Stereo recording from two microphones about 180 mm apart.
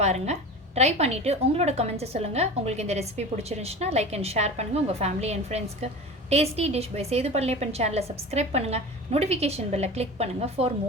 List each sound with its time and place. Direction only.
0.0 s a woman's voice: 40° right (ahead or behind)